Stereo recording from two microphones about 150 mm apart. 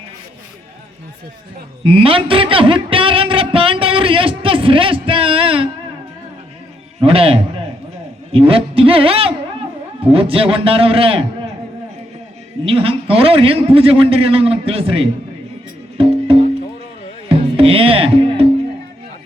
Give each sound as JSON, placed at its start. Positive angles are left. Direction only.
{"t": 1.8, "sound": "music", "side_deg": -35}
{"t": 7.0, "sound": "a man's voice", "side_deg": -40}
{"t": 12.6, "sound": "a man's voice", "side_deg": -40}
{"t": 16.0, "sound": "music", "side_deg": -40}